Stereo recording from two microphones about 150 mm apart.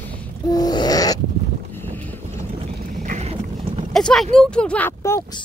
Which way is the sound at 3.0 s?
50° right (ahead or behind).